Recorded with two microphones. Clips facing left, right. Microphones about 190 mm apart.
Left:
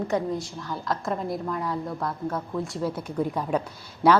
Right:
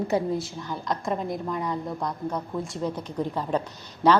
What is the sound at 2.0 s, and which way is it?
Speech, 15° right (ahead or behind).